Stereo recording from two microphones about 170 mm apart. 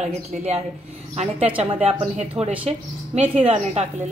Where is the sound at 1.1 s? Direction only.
35° right (ahead or behind).